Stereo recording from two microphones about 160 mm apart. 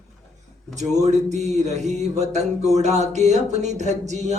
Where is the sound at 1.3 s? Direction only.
45° right (ahead or behind).